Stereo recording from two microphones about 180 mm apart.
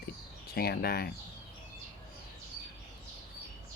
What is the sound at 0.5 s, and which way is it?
Speech, 60° left (ahead or behind).